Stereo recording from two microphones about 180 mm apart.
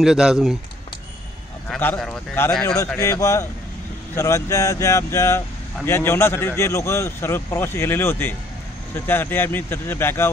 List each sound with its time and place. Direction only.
0.0 s speech: 5° right (ahead or behind)
1.7 s speech: 5° left (ahead or behind)
2.6 s speech: 15° left (ahead or behind)